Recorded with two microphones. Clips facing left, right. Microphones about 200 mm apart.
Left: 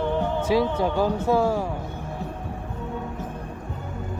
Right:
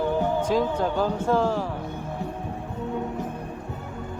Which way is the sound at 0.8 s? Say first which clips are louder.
Left 2 dB; 10° left (ahead or behind).